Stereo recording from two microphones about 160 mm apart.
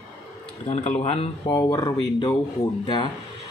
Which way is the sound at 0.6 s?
45° left (ahead or behind).